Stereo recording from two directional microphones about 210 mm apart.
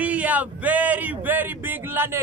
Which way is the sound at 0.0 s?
5° right (ahead or behind).